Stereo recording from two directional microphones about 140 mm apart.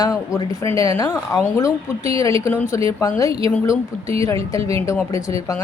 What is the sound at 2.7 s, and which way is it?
Speech, 25° left (ahead or behind).